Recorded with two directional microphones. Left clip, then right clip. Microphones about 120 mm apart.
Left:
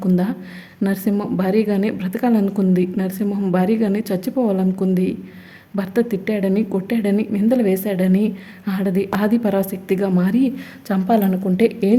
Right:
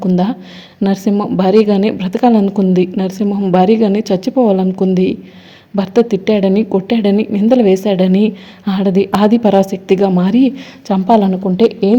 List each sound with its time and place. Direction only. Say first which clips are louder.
0.0 s a woman's voice: right 6 dB; 20° right (ahead or behind)
0.8 s a woman's voice: right 6 dB; 10° right (ahead or behind)
1.4 s a woman's voice: right 10 dB; 25° right (ahead or behind)
3.5 s a woman's voice: right 9 dB; 25° right (ahead or behind)